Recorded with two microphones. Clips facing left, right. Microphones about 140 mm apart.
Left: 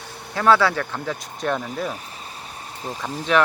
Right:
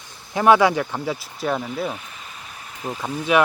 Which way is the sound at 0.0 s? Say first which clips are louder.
Left 7 dB; 65° left (ahead or behind).